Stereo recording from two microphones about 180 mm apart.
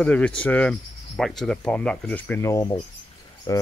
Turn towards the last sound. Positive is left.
turn(degrees=20)  # may be behind; listen again after turning